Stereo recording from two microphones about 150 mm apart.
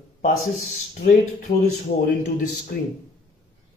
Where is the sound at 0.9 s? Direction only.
60° left (ahead or behind).